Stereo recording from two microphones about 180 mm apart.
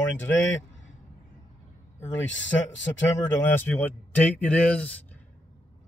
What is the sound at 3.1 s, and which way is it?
A man's voice, 10° left (ahead or behind).